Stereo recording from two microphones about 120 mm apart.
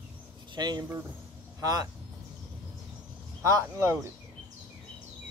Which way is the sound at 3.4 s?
25° right (ahead or behind).